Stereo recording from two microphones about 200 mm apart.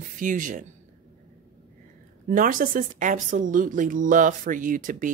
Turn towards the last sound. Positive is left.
turn(degrees=-40)  # may be behind; listen again after turning